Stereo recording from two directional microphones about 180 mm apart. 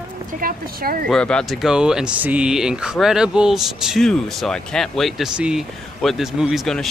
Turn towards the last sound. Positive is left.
turn(degrees=0)  # may be behind; listen again after turning